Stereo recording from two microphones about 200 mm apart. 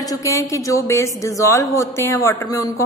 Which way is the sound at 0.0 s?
15° left (ahead or behind).